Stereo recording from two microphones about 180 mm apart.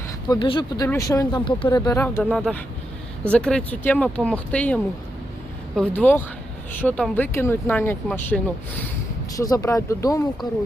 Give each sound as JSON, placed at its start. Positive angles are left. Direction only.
{"t": 0.3, "sound": "speech", "side_deg": 30}
{"t": 2.3, "sound": "speech", "side_deg": 0}